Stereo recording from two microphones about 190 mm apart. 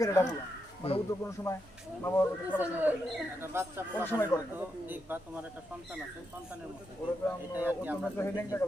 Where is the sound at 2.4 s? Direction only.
10° right (ahead or behind).